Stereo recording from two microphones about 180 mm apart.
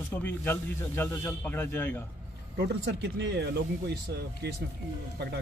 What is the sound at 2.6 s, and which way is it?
Speech, 75° right (ahead or behind).